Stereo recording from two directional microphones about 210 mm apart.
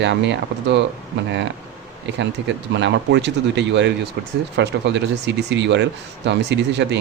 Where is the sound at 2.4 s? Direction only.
60° right (ahead or behind).